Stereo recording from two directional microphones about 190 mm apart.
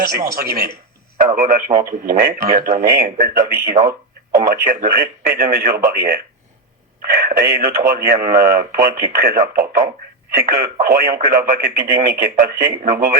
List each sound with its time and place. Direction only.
1.2 s speech: 45° right (ahead or behind)